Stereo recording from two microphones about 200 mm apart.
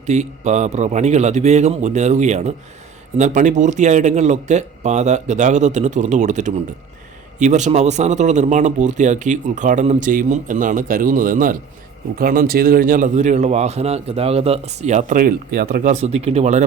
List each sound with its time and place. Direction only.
0.0 s speech: 35° right (ahead or behind)